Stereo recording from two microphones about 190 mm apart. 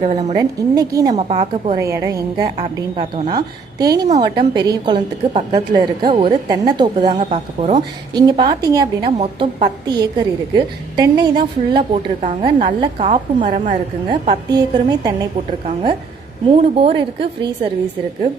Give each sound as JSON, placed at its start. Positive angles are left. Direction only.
{"t": 0.0, "sound": "a woman's voice", "side_deg": -35}
{"t": 0.3, "sound": "a woman's voice", "side_deg": -20}
{"t": 1.1, "sound": "a woman's voice", "side_deg": -35}
{"t": 1.8, "sound": "a woman's voice", "side_deg": -15}
{"t": 2.9, "sound": "a woman's voice", "side_deg": -35}
{"t": 3.2, "sound": "a woman's voice", "side_deg": -20}
{"t": 7.2, "sound": "a woman's voice", "side_deg": -40}
{"t": 8.1, "sound": "a woman's voice", "side_deg": -25}
{"t": 12.2, "sound": "a woman's voice", "side_deg": -35}
{"t": 14.1, "sound": "a woman's voice", "side_deg": -25}